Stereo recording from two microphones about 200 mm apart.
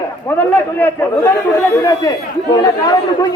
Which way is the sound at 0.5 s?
10° left (ahead or behind).